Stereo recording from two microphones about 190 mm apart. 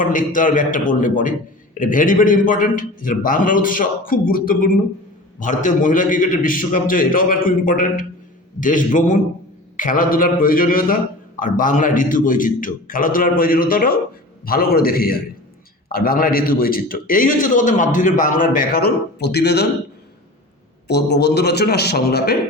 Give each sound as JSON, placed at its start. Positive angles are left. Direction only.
{"t": 0.0, "sound": "a man's voice", "side_deg": 45}
{"t": 20.8, "sound": "a man's voice", "side_deg": 60}